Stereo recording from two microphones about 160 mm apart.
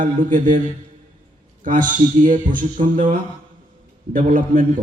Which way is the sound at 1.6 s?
55° right (ahead or behind).